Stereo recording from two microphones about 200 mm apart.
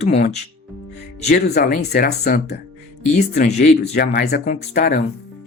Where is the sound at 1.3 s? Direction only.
50° left (ahead or behind).